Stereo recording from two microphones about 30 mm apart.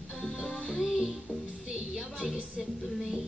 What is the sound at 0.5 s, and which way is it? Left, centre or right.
Music, left.